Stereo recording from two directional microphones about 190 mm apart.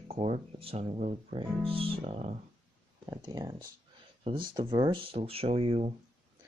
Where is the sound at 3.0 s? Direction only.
20° right (ahead or behind).